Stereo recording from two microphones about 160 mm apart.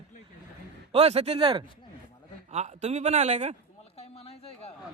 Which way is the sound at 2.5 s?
40° right (ahead or behind).